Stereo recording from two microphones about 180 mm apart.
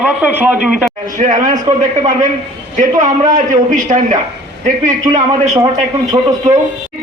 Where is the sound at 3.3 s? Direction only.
45° right (ahead or behind).